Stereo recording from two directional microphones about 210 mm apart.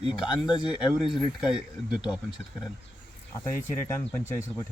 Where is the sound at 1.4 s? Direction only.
5° right (ahead or behind).